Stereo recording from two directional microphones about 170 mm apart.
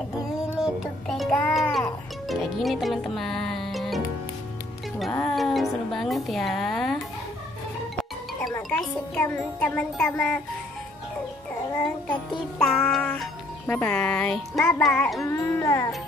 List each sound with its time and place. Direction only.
0.6 s music: centre (ahead or behind)
5.1 s speech: 5° left (ahead or behind)
8.6 s wind chime: 5° left (ahead or behind)
11.7 s music: 5° left (ahead or behind)
14.8 s wind chime: 5° left (ahead or behind)
15.2 s music: 15° left (ahead or behind)